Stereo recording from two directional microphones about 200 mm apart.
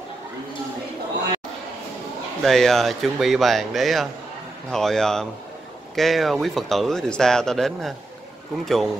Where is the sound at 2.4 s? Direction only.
Centre (ahead or behind).